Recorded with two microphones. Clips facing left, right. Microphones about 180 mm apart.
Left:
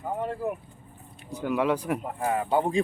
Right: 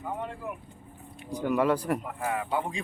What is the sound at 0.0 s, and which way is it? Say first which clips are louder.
Speech: left 5 dB; 40° left (ahead or behind).